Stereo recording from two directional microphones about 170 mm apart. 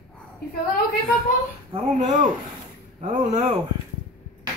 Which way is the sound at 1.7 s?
45° right (ahead or behind).